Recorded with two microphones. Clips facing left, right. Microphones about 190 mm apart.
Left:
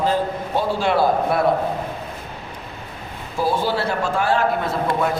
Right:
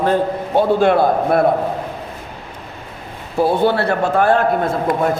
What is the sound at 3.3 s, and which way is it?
A man's voice, 60° right (ahead or behind).